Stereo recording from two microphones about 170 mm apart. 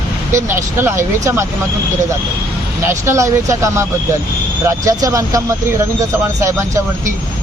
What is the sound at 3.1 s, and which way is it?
Speech, 15° right (ahead or behind).